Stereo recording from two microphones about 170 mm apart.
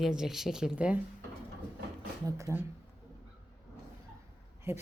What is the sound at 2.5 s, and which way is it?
Speech, 15° right (ahead or behind).